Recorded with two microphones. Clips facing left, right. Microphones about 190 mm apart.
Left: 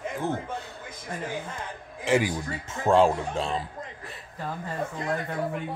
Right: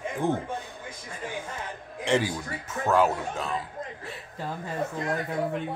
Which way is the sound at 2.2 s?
25° left (ahead or behind).